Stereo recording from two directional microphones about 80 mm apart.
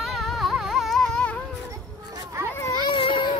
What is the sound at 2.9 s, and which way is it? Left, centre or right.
Baby cry, left.